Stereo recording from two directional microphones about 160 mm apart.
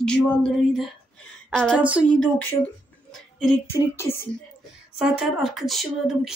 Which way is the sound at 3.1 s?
5° left (ahead or behind).